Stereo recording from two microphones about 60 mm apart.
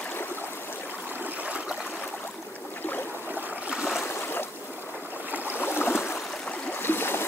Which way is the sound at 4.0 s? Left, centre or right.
Left.